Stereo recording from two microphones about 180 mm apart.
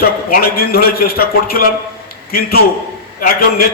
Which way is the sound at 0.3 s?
55° left (ahead or behind).